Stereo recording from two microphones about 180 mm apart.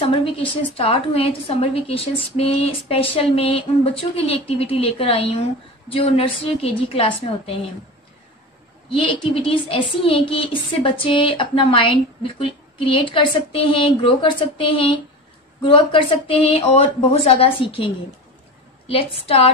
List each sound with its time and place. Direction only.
0.0 s a woman's voice: 30° left (ahead or behind)
8.9 s a woman's voice: 30° left (ahead or behind)